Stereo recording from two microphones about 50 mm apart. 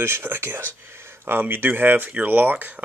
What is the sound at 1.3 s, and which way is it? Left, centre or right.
Speech, right.